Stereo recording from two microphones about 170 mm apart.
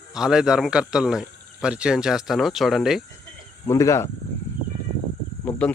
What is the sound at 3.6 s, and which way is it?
Speech, 15° left (ahead or behind).